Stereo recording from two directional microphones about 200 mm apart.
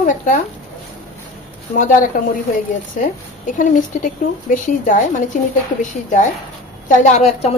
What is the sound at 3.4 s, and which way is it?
A woman's voice, 40° left (ahead or behind).